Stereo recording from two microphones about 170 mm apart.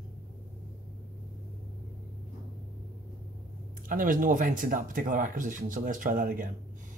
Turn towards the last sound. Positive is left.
turn(degrees=-55)  # may be behind; listen again after turning